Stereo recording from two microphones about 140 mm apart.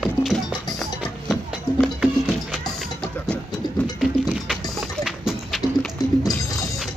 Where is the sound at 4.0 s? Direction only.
Centre (ahead or behind).